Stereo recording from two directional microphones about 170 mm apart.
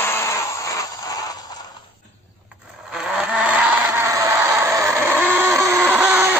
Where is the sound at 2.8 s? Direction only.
5° right (ahead or behind).